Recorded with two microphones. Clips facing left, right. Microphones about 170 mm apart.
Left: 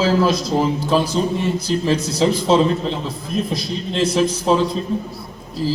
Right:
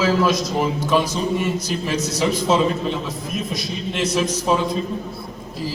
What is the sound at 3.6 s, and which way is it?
Speech, 30° left (ahead or behind).